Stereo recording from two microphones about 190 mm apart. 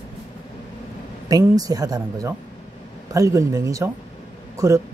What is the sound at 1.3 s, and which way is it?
A woman's voice, 20° right (ahead or behind).